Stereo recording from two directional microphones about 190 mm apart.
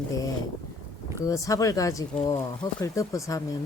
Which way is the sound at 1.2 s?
20° left (ahead or behind).